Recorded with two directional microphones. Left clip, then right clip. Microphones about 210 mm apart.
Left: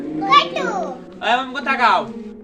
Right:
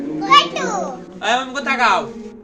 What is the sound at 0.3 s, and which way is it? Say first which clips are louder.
Children playing: right 2 dB; 5° right (ahead or behind).